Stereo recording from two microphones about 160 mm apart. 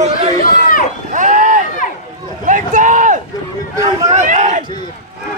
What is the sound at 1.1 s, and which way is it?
Run, 50° right (ahead or behind).